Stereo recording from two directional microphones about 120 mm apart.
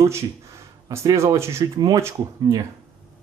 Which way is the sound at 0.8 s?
25° right (ahead or behind).